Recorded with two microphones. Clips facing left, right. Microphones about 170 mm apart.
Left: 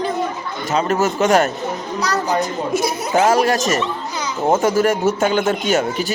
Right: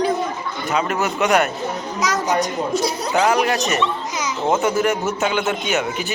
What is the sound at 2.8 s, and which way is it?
Speech, 50° left (ahead or behind).